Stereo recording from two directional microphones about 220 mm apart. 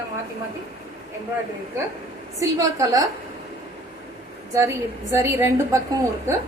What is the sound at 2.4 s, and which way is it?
Speech, 15° right (ahead or behind).